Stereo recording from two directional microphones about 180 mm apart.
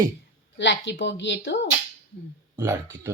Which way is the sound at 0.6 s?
80° left.